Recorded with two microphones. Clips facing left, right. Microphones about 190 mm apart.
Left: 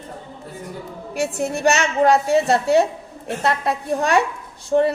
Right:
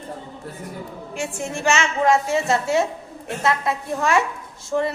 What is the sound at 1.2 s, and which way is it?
A woman's voice, 40° left (ahead or behind).